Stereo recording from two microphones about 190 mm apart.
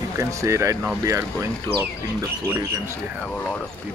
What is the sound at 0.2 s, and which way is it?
Speech, 15° right (ahead or behind).